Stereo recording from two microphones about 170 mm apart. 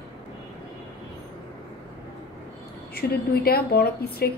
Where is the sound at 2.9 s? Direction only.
60° left (ahead or behind).